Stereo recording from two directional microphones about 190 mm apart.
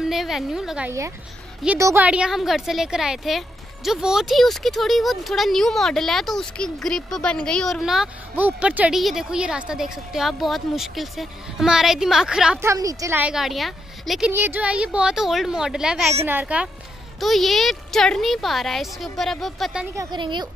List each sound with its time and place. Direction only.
0.0 s a woman's voice: centre (ahead or behind)
12.6 s a woman's voice: 15° right (ahead or behind); by 19.9 s centre (ahead or behind)
20.0 s a woman's voice: 25° right (ahead or behind)